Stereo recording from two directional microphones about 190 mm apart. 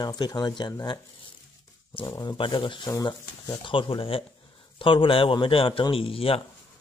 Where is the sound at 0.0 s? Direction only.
20° left (ahead or behind).